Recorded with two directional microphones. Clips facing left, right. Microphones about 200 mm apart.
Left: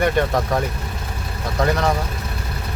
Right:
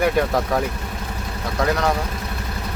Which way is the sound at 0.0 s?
Centre (ahead or behind).